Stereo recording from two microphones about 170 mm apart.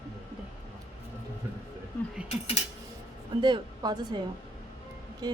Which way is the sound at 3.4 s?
25° right (ahead or behind).